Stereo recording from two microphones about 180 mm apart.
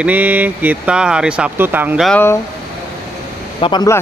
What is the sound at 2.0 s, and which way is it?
Speech, 10° left (ahead or behind).